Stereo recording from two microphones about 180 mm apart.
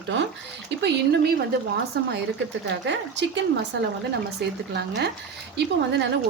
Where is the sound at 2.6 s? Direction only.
80° right.